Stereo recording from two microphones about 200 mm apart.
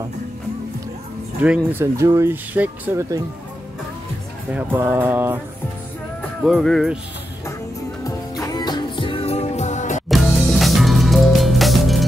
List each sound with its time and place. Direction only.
1.7 s speech: 15° right (ahead or behind)
4.5 s speech: 10° right (ahead or behind)
6.4 s speech: centre (ahead or behind)
8.0 s music: 20° left (ahead or behind); by 10.0 s 35° left (ahead or behind)
10.0 s music: centre (ahead or behind)